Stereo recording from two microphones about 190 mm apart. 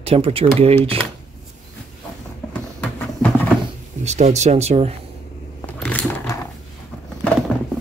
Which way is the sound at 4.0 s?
35° right (ahead or behind).